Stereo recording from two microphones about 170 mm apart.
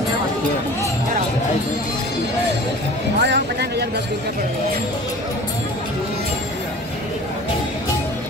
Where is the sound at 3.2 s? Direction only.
90° right.